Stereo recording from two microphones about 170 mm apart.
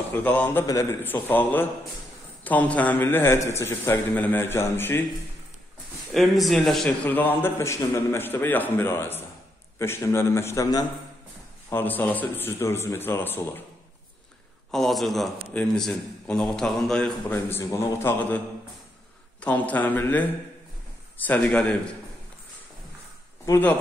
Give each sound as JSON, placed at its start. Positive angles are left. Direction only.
{"t": 0.1, "sound": "a man's voice", "side_deg": 10}
{"t": 6.1, "sound": "a man's voice", "side_deg": 0}
{"t": 14.7, "sound": "a man's voice", "side_deg": 0}
{"t": 19.4, "sound": "a man's voice", "side_deg": 10}
{"t": 23.4, "sound": "a man's voice", "side_deg": 15}